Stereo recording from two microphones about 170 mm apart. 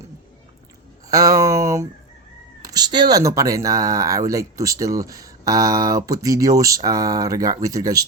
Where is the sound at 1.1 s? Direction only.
20° right (ahead or behind).